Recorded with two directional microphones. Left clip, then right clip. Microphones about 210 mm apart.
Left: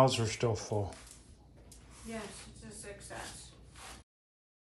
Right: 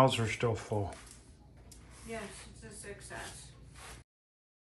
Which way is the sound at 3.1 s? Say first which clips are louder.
Even; 45° left (ahead or behind).